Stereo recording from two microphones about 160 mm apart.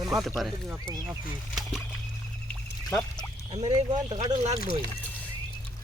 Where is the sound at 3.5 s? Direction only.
45° right (ahead or behind).